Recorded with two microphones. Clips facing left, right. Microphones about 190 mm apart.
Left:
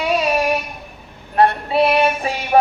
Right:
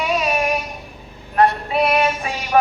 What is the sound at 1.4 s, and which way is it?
Music, 30° left (ahead or behind).